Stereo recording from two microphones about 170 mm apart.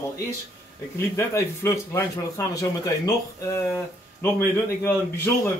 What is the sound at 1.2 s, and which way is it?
Speech, 15° left (ahead or behind).